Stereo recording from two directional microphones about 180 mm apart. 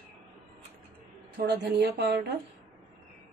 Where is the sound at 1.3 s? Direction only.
65° right (ahead or behind).